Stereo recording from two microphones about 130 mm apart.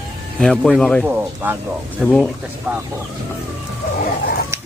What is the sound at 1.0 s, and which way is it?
Speech, 15° right (ahead or behind).